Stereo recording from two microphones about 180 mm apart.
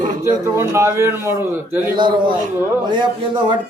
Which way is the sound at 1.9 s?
25° right (ahead or behind).